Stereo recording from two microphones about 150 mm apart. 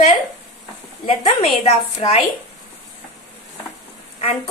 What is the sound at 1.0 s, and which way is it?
A woman's voice, 40° left (ahead or behind).